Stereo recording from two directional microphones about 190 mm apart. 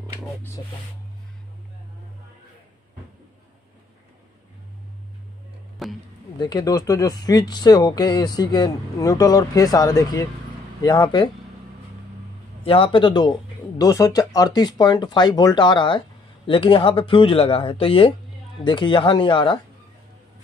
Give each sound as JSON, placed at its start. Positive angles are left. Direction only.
{"t": 5.8, "sound": "music", "side_deg": 0}
{"t": 6.3, "sound": "speech", "side_deg": 20}
{"t": 12.6, "sound": "speech", "side_deg": 30}